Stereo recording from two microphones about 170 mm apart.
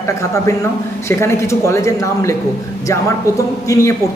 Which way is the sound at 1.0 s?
15° left (ahead or behind).